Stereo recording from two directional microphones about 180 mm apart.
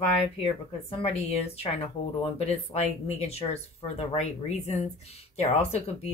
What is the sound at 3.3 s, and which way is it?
Speech, 35° left (ahead or behind).